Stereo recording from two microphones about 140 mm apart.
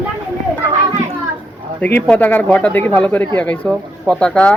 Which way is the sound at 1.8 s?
10° left (ahead or behind).